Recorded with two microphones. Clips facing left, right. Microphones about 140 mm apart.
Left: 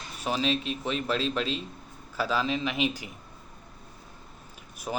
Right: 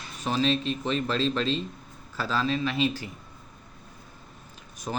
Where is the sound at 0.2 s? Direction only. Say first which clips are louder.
Right 2 dB; 10° left (ahead or behind).